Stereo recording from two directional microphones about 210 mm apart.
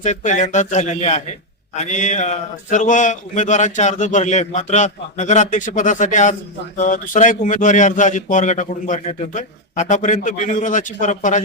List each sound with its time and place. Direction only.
0.0 s a man's voice: 35° left (ahead or behind)